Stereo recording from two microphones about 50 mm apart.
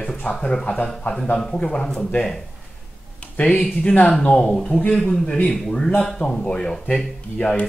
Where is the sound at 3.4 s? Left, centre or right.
Left.